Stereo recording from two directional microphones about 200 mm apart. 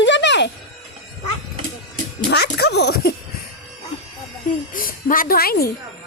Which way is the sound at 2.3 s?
55° left (ahead or behind).